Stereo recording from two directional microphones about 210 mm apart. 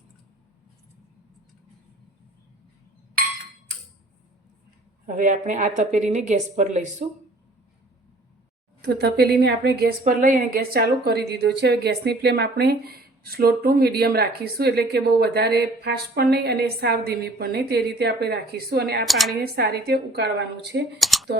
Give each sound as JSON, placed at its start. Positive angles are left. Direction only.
{"t": 5.0, "sound": "a woman's voice", "side_deg": -40}
{"t": 8.8, "sound": "a woman's voice", "side_deg": -50}
{"t": 19.0, "sound": "speech", "side_deg": 0}
{"t": 19.4, "sound": "a woman's voice", "side_deg": -50}
{"t": 21.0, "sound": "speech", "side_deg": 0}